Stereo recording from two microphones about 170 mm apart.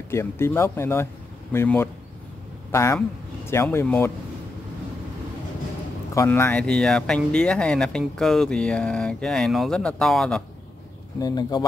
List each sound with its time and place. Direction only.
0.1 s speech: 15° left (ahead or behind)
6.1 s speech: 15° left (ahead or behind)
11.1 s speech: 25° left (ahead or behind)